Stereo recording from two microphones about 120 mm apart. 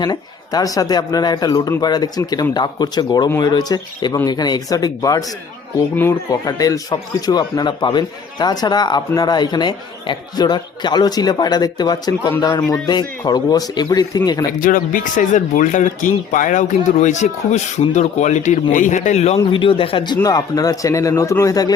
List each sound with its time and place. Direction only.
0.0 s a man's voice: 35° left (ahead or behind)
3.2 s a man's voice: 25° left (ahead or behind)
6.4 s a man's voice: 30° left (ahead or behind)
15.0 s speech: 90° left; by 19.4 s 70° left (ahead or behind)
19.4 s speech: 45° left (ahead or behind)
20.2 s speech: 35° left (ahead or behind)